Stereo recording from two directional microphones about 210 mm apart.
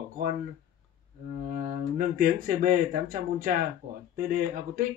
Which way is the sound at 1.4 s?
40° right (ahead or behind).